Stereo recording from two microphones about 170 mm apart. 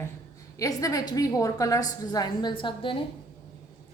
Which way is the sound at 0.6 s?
20° left (ahead or behind).